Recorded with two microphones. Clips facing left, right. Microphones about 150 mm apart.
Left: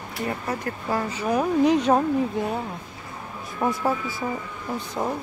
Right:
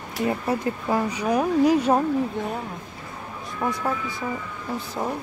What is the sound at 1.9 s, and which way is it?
Speech, 5° left (ahead or behind).